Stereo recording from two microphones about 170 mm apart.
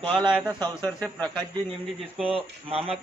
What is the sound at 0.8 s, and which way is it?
Speech, 10° left (ahead or behind).